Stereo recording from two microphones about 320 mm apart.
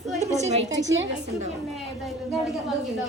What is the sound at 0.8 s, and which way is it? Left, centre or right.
Speech, right.